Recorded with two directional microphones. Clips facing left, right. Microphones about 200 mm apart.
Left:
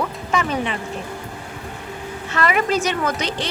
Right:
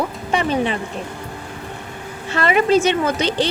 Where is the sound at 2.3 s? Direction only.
30° right (ahead or behind).